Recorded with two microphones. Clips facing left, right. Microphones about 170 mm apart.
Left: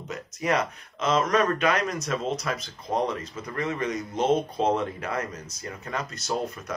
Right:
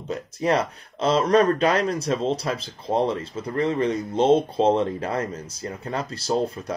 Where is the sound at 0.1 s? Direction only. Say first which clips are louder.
Right 4 dB; 30° right (ahead or behind).